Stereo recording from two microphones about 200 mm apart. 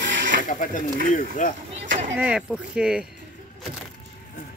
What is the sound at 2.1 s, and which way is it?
Speech, 5° right (ahead or behind).